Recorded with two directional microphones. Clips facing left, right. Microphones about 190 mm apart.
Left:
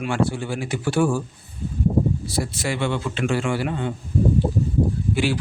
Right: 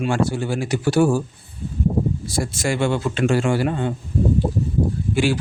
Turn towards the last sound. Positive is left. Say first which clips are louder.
# right 3 dB
turn(degrees=-45)  # may be behind; listen again after turning